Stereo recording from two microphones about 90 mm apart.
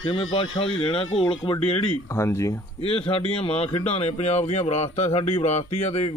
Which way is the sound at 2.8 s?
90° left.